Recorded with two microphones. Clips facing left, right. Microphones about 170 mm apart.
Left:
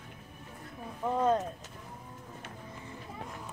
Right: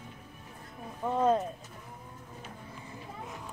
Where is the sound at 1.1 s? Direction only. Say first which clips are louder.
Right 1 dB; 5° right (ahead or behind).